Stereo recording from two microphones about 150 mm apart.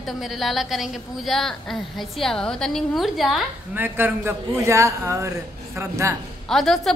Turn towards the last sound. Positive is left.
turn(degrees=0)  # may be behind; listen again after turning